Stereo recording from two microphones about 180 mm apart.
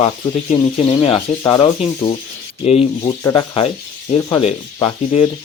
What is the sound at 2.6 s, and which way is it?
Speech, 30° left (ahead or behind).